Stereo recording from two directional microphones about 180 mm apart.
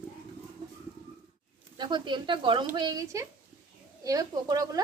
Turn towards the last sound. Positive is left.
turn(degrees=-20)  # may be behind; listen again after turning